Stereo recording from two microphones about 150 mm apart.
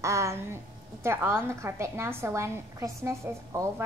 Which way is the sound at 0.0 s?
20° right (ahead or behind).